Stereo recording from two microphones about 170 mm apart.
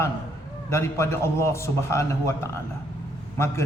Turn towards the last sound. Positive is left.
turn(degrees=15)  # may be behind; listen again after turning